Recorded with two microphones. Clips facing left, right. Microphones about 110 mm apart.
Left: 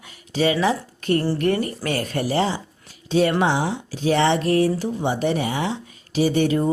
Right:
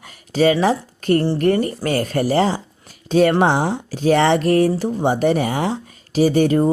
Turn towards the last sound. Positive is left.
turn(degrees=-40)  # may be behind; listen again after turning